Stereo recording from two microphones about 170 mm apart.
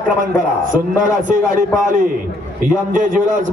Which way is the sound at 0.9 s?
50° right (ahead or behind).